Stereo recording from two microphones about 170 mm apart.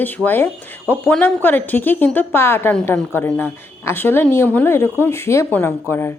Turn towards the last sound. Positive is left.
turn(degrees=10)  # may be behind; listen again after turning